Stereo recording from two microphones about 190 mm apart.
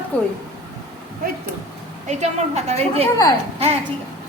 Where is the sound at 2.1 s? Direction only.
35° right (ahead or behind).